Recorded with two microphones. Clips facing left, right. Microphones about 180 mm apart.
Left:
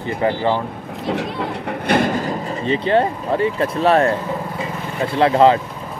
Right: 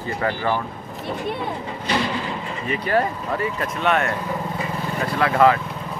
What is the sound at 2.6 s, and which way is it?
Speech, 30° left (ahead or behind).